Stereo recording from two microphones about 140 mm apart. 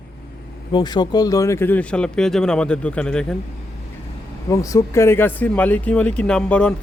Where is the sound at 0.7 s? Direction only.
30° left (ahead or behind); by 3.3 s 5° left (ahead or behind).